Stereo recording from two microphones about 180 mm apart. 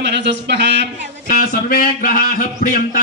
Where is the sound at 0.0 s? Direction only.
70° right (ahead or behind).